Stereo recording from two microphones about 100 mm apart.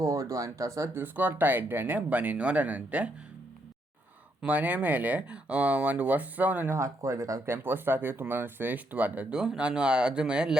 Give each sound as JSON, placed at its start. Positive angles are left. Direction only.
{"t": 0.0, "sound": "speech", "side_deg": -35}
{"t": 1.0, "sound": "speech", "side_deg": -20}
{"t": 4.4, "sound": "speech", "side_deg": -15}
{"t": 6.7, "sound": "speech", "side_deg": -30}